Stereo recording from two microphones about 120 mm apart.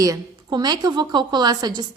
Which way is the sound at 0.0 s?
30° right (ahead or behind).